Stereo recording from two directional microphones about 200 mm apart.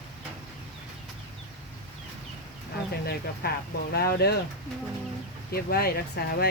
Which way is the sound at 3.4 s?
50° left (ahead or behind).